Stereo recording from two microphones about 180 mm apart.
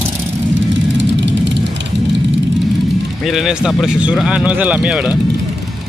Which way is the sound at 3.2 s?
Centre (ahead or behind).